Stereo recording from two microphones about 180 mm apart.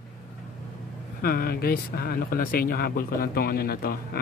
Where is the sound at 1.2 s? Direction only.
55° left (ahead or behind).